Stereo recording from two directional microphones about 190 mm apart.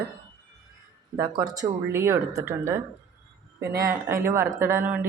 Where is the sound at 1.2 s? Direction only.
15° right (ahead or behind).